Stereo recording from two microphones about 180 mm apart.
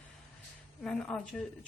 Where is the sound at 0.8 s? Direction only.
5° left (ahead or behind).